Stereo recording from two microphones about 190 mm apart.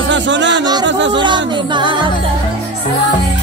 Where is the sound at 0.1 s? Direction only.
70° right (ahead or behind).